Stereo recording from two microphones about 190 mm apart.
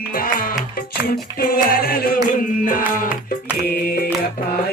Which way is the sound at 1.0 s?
50° left (ahead or behind).